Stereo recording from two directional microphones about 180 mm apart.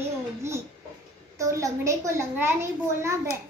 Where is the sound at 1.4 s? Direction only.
15° right (ahead or behind).